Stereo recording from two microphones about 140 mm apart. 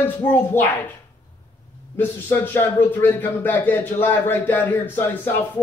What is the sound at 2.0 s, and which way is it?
Speech, 15° left (ahead or behind).